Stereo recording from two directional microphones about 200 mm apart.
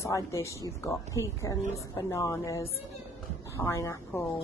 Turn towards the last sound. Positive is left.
turn(degrees=10)  # may be behind; listen again after turning